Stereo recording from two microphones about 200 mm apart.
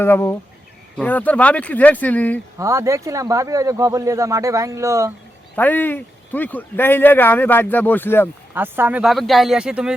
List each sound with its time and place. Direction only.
0.0 s speech: 10° left (ahead or behind)
2.6 s speech: 15° right (ahead or behind)
5.5 s speech: 10° left (ahead or behind)
8.5 s speech: 10° right (ahead or behind)